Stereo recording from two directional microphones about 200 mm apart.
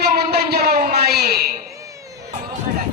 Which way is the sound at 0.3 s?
50° right (ahead or behind).